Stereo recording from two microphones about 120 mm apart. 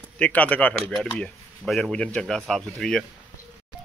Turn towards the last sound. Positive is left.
turn(degrees=5)  # may be behind; listen again after turning